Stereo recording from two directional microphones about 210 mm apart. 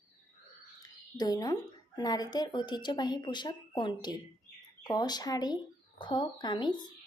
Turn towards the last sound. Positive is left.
turn(degrees=20)  # may be behind; listen again after turning